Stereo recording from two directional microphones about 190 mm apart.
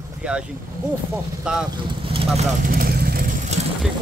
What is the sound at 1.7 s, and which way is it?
Speech, 25° right (ahead or behind).